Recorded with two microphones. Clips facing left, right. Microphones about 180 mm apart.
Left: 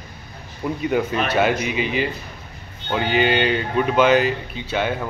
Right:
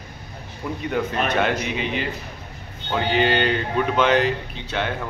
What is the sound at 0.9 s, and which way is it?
Speech, 5° left (ahead or behind).